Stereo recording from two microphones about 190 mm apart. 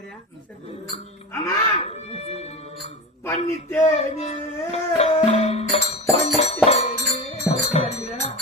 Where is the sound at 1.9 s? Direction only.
35° left (ahead or behind).